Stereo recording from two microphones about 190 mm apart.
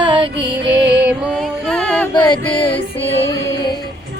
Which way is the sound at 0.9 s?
5° right (ahead or behind).